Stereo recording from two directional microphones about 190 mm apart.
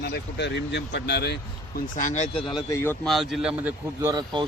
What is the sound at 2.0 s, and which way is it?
Speech, 40° left (ahead or behind).